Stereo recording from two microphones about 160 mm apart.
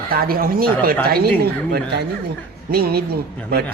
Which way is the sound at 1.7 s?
90° right.